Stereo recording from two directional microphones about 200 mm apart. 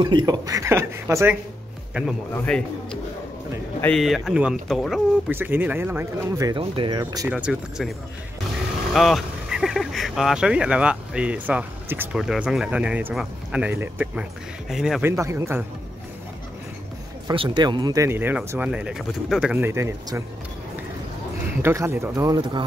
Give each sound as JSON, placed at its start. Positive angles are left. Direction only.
{"t": 0.0, "sound": "speech", "side_deg": -20}
{"t": 2.3, "sound": "speech", "side_deg": 5}
{"t": 7.2, "sound": "speech", "side_deg": -5}
{"t": 8.9, "sound": "speech", "side_deg": 0}
{"t": 17.3, "sound": "speech", "side_deg": -20}
{"t": 21.6, "sound": "speech", "side_deg": -10}